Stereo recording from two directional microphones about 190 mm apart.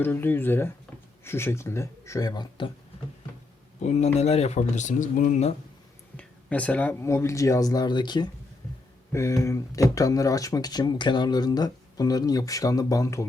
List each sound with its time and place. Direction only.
0.0 s speech: 10° left (ahead or behind)
3.8 s speech: 35° left (ahead or behind)
6.1 s speech: 5° left (ahead or behind)